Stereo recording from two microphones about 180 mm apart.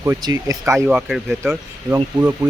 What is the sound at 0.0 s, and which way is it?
Speech, 15° right (ahead or behind).